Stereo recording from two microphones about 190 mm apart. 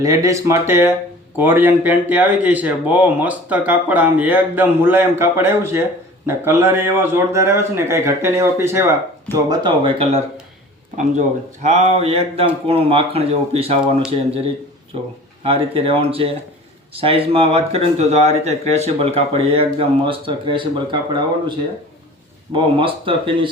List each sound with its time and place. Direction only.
0.0 s speech: 15° right (ahead or behind)
9.5 s speech: 25° right (ahead or behind)
11.6 s speech: 35° right (ahead or behind)
13.8 s speech: 5° right (ahead or behind)
15.4 s speech: 30° right (ahead or behind)
22.5 s speech: 25° right (ahead or behind)